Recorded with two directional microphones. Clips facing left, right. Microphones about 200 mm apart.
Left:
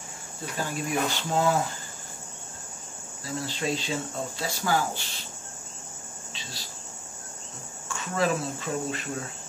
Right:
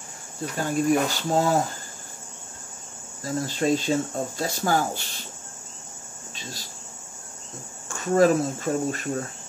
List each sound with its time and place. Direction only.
0.7 s speech: 45° right (ahead or behind)
3.3 s speech: 45° right (ahead or behind)
6.3 s speech: 45° right (ahead or behind)
7.9 s speech: 45° right (ahead or behind)